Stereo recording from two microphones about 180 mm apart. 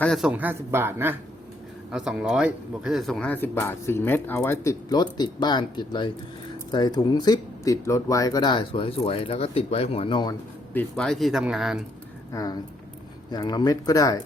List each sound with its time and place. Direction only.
0.0 s a man's voice: centre (ahead or behind); by 10.3 s 25° left (ahead or behind)
10.8 s speech: 5° left (ahead or behind)
12.3 s speech: 20° left (ahead or behind)